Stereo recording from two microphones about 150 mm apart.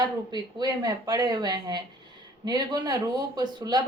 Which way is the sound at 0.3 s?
25° right (ahead or behind).